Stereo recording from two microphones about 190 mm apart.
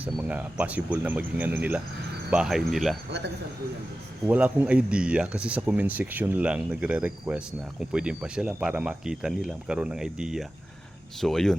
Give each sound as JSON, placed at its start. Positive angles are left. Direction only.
{"t": 0.0, "sound": "speech", "side_deg": -10}
{"t": 3.1, "sound": "speech", "side_deg": -65}
{"t": 4.3, "sound": "speech", "side_deg": -10}